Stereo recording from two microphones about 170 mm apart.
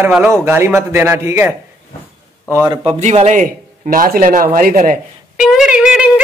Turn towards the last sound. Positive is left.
turn(degrees=-5)  # may be behind; listen again after turning